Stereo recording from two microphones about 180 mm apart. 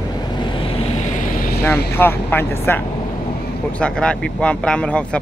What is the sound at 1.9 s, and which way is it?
Speech, 10° left (ahead or behind).